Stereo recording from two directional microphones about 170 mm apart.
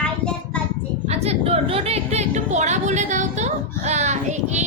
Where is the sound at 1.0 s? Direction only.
40° right (ahead or behind).